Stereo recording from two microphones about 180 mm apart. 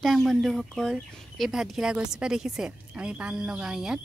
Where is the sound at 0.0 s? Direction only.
Centre (ahead or behind).